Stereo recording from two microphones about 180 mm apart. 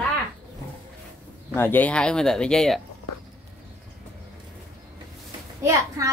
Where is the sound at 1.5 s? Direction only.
10° left (ahead or behind).